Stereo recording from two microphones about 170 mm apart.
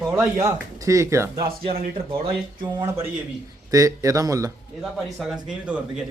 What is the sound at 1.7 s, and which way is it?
Speech, 60° right (ahead or behind).